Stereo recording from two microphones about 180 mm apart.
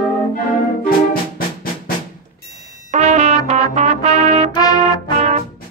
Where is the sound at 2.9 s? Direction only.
40° right (ahead or behind).